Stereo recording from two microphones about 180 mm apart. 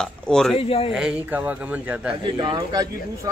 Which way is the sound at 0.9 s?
5° right (ahead or behind).